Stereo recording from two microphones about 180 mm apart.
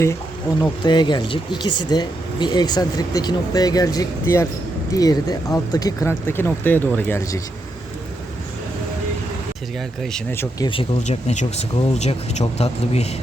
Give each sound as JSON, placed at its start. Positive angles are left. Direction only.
{"t": 0.6, "sound": "speech", "side_deg": 25}
{"t": 10.3, "sound": "speech", "side_deg": 15}
{"t": 10.7, "sound": "speech", "side_deg": 30}